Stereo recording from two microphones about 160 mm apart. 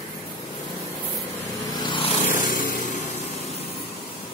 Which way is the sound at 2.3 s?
55° left (ahead or behind).